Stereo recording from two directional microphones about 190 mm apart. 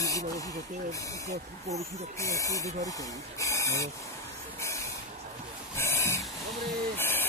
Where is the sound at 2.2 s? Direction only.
15° left (ahead or behind).